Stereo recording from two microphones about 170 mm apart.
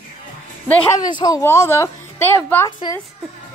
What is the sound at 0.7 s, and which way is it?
Speech, 10° left (ahead or behind).